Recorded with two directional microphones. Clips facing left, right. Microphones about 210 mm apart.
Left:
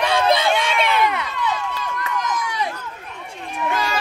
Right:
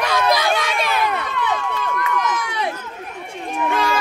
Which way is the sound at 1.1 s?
55° right (ahead or behind).